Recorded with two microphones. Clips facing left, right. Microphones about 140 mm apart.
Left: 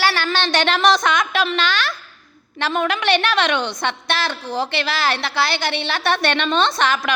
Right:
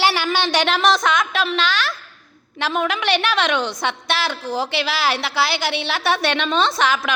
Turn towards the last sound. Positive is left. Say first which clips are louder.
# even
turn(degrees=-5)  # may be behind; listen again after turning